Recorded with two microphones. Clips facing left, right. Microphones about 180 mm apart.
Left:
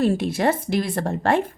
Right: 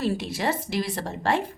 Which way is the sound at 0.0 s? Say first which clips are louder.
Left 6 dB; 50° left (ahead or behind).